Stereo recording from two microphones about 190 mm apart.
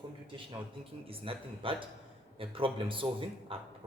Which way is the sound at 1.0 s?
30° right (ahead or behind).